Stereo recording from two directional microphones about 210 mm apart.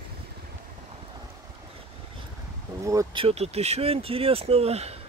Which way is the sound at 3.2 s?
30° right (ahead or behind).